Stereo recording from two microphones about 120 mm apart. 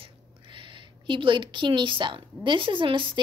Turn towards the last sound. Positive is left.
turn(degrees=-45)  # may be behind; listen again after turning